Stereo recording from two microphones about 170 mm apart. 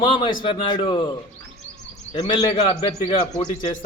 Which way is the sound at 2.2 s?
30° left (ahead or behind).